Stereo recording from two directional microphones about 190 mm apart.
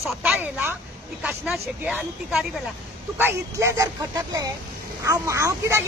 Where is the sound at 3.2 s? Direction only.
15° right (ahead or behind).